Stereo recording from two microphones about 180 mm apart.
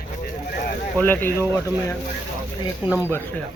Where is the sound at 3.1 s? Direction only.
10° left (ahead or behind).